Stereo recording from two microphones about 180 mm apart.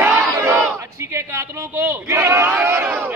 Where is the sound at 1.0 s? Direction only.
15° right (ahead or behind).